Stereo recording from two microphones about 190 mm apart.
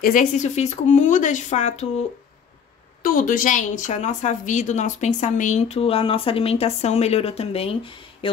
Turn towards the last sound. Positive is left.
turn(degrees=30)  # may be behind; listen again after turning